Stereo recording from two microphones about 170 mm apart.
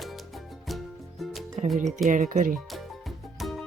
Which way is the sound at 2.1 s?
50° right (ahead or behind).